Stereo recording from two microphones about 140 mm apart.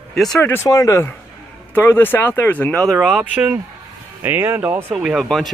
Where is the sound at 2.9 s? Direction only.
Centre (ahead or behind).